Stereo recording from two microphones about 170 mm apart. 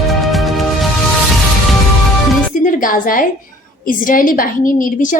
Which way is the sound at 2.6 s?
50° left (ahead or behind).